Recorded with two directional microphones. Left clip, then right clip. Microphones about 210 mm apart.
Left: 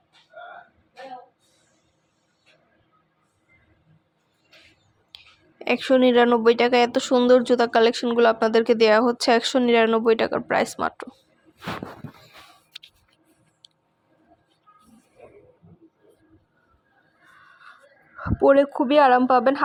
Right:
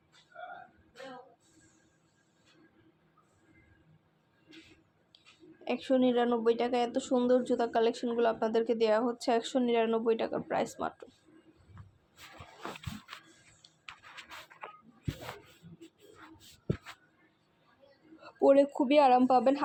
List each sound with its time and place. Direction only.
5.1 s whispering: 35° left (ahead or behind)
5.6 s speech: 40° left (ahead or behind)
18.2 s speech: 20° left (ahead or behind)